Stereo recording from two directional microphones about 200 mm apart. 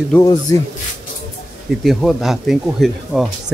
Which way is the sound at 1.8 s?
Centre (ahead or behind).